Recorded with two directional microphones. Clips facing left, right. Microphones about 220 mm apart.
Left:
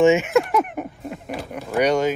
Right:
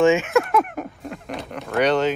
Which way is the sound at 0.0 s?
20° left (ahead or behind).